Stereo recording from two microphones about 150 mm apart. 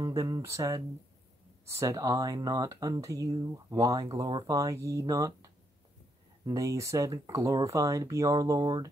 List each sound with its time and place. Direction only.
0.0 s speech: 25° right (ahead or behind)